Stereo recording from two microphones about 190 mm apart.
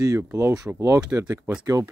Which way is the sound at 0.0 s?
15° right (ahead or behind).